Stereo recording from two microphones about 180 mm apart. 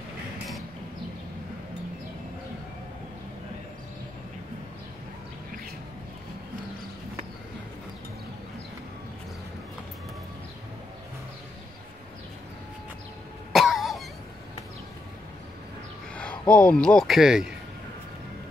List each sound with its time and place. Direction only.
13.5 s cough: centre (ahead or behind)
16.2 s a man's voice: 5° left (ahead or behind)